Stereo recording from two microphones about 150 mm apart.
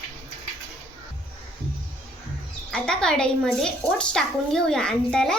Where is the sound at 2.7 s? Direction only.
5° left (ahead or behind).